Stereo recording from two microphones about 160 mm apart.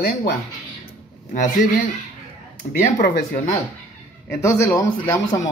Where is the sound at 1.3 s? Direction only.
50° left (ahead or behind).